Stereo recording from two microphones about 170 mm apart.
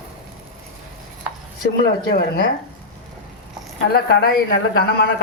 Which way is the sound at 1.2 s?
5° right (ahead or behind).